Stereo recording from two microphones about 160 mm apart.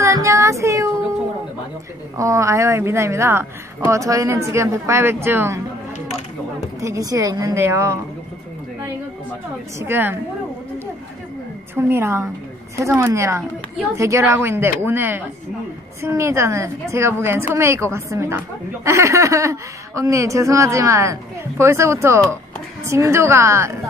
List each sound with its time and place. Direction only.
0.0 s child singing: 20° right (ahead or behind)
2.1 s a woman's voice: 20° right (ahead or behind)
6.8 s speech: 20° right (ahead or behind)
9.8 s a woman's voice: 15° right (ahead or behind)
11.7 s a woman's voice: 15° right (ahead or behind)